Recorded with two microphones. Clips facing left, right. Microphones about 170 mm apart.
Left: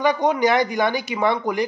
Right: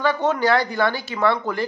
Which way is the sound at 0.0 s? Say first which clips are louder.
Left 2 dB; 15° left (ahead or behind).